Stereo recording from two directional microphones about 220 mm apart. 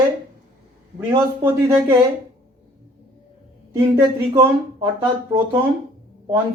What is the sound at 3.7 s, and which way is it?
Speech, 15° right (ahead or behind).